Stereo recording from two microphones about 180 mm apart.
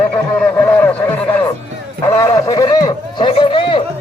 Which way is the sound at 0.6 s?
10° left (ahead or behind).